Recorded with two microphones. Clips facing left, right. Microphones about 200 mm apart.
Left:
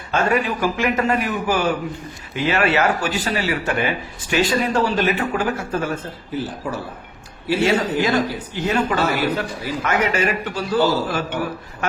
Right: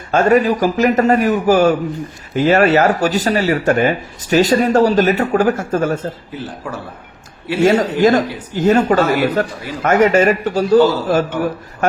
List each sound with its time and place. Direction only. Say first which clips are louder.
0.1 s a man's voice: right 7 dB; 40° right (ahead or behind)
7.6 s speech: right 8 dB; 45° right (ahead or behind)